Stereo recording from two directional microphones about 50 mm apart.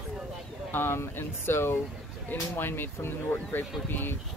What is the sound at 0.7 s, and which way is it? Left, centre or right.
Speech, left.